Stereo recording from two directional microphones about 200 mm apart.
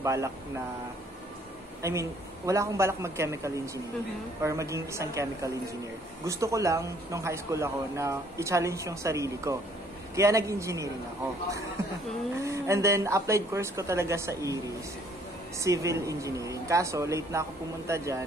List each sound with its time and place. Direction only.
0.0 s a man's voice: 15° right (ahead or behind)
1.8 s a man's voice: 15° right (ahead or behind)
12.4 s a man's voice: 15° right (ahead or behind)
15.6 s a man's voice: 15° right (ahead or behind)